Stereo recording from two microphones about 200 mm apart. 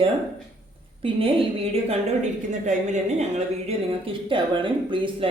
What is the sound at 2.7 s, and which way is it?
A woman's voice, 35° right (ahead or behind).